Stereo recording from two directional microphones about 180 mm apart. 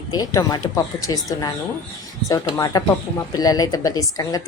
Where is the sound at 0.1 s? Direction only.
20° left (ahead or behind).